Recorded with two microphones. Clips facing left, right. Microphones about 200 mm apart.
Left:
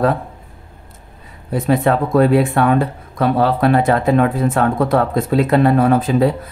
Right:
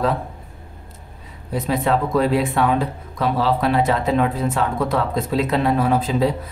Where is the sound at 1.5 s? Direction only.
55° left (ahead or behind).